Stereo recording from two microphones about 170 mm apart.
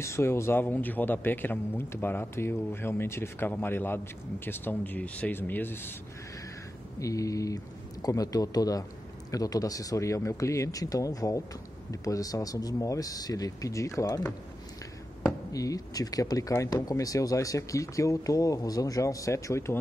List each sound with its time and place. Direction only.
0.0 s a man's voice: 15° left (ahead or behind)
7.0 s speech: 20° left (ahead or behind)